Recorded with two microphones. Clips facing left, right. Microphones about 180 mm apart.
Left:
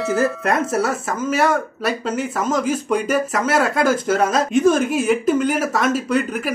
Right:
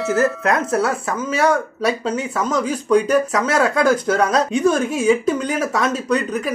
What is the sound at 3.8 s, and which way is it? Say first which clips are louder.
Speech: right 1 dB; 5° left (ahead or behind).